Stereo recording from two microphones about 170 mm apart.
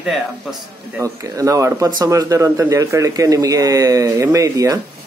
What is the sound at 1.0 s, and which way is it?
Speech, 20° right (ahead or behind).